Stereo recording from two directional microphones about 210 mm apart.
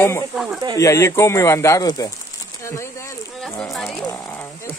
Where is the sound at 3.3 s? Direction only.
Centre (ahead or behind).